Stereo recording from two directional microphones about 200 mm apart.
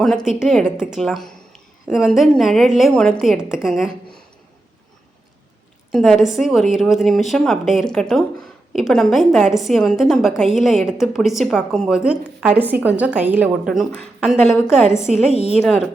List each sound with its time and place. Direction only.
0.0 s a woman's voice: centre (ahead or behind)
5.9 s a woman's voice: centre (ahead or behind)
15.3 s a woman's voice: 30° left (ahead or behind)
15.6 s a woman's voice: centre (ahead or behind)